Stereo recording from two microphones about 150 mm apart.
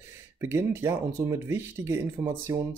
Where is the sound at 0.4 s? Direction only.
15° right (ahead or behind).